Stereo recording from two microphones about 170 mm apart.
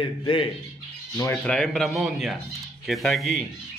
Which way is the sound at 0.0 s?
30° left (ahead or behind).